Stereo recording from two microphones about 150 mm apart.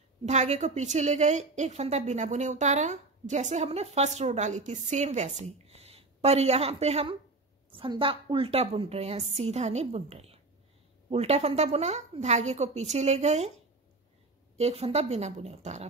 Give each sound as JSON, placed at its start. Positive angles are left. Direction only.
{"t": 0.2, "sound": "a woman's voice", "side_deg": -50}
{"t": 14.6, "sound": "a woman's voice", "side_deg": -45}